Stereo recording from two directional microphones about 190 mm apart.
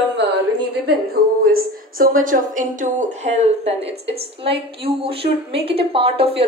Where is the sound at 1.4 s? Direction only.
50° right (ahead or behind).